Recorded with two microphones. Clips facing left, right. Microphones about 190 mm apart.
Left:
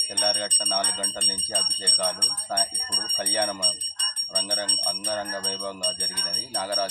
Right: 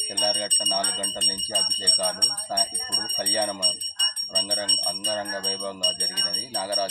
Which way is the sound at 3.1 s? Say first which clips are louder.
Even; centre (ahead or behind).